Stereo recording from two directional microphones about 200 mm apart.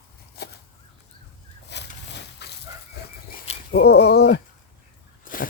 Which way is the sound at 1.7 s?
60° left (ahead or behind).